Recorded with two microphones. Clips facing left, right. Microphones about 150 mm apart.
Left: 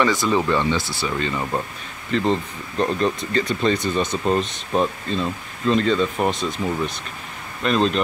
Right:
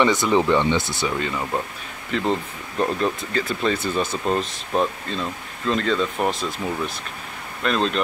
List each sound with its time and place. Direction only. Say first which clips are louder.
0.0 s speech: right 1 dB; 20° right (ahead or behind)
2.0 s speech: left 2 dB; 5° right (ahead or behind)